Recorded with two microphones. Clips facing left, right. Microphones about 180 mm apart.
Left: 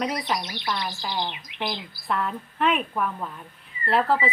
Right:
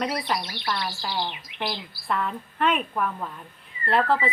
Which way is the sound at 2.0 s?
Centre (ahead or behind).